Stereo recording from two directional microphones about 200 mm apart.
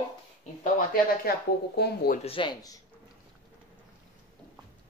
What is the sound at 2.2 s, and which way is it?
Cutlery, 25° left (ahead or behind).